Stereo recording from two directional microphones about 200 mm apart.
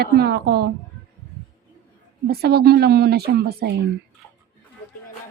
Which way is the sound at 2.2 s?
50° right (ahead or behind).